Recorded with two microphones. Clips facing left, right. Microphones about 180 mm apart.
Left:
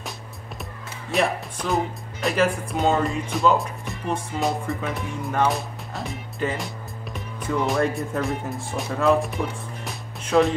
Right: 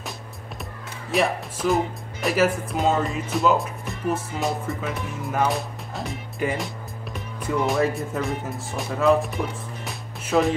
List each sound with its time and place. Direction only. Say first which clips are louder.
1.1 s speech: even; centre (ahead or behind)
6.4 s speech: right 1 dB; 10° right (ahead or behind)
7.6 s speech: right 1 dB; centre (ahead or behind)
9.8 s music: right 1 dB; centre (ahead or behind)